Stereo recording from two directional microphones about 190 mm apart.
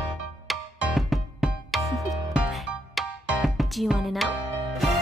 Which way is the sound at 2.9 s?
Centre (ahead or behind).